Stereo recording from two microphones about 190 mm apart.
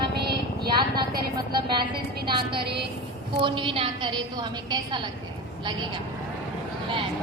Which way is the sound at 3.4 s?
25° right (ahead or behind).